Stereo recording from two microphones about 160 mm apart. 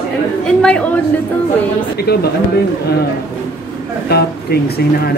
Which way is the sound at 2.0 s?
75° left (ahead or behind).